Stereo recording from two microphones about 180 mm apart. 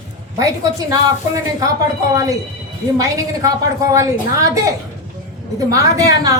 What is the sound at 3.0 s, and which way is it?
A woman's voice, 15° right (ahead or behind).